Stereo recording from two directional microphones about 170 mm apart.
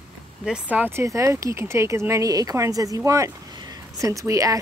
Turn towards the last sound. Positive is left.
turn(degrees=-20)  # may be behind; listen again after turning